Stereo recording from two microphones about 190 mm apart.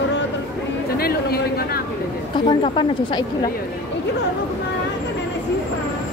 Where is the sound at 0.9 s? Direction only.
55° left (ahead or behind).